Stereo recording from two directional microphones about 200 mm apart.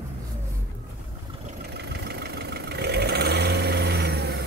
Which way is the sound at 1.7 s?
55° right (ahead or behind).